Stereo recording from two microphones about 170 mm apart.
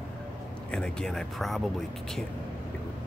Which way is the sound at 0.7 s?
5° left (ahead or behind).